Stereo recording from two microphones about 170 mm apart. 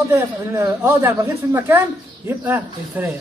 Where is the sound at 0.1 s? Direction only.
15° right (ahead or behind).